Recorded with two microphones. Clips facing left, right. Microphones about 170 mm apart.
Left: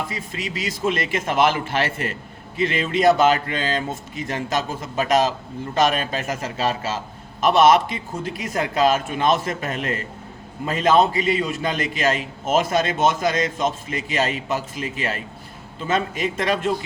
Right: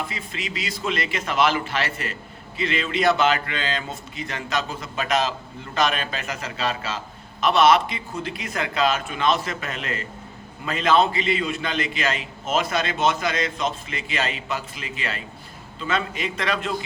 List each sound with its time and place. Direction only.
0.6 s a man's voice: 45° left (ahead or behind)